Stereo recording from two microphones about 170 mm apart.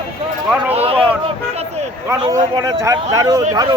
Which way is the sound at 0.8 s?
35° right (ahead or behind).